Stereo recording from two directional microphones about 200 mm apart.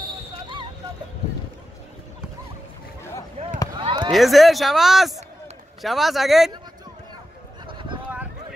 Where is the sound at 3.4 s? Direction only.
30° right (ahead or behind).